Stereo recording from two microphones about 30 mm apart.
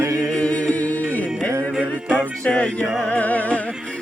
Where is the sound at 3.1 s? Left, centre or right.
Left.